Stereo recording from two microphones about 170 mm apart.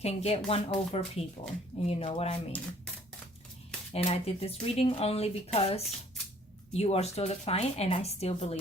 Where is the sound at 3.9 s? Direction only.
35° left (ahead or behind).